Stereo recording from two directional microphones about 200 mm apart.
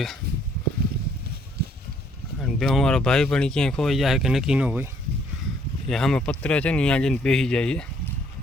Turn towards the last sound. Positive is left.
turn(degrees=5)  # may be behind; listen again after turning